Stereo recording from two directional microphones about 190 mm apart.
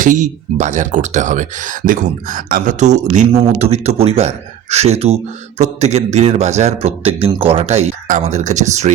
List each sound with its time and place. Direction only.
0.0 s speech: 40° right (ahead or behind)